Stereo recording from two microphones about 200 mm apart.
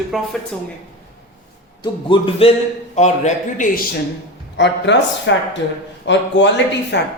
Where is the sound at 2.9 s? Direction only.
35° left (ahead or behind).